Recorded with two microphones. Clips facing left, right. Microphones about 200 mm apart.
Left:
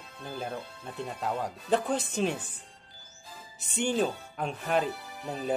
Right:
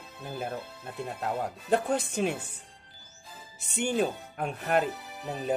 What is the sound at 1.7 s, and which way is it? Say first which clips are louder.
Speech: right 1 dB; 60° right (ahead or behind).